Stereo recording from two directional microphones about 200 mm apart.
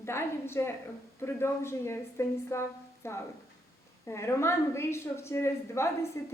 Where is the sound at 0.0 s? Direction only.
10° left (ahead or behind).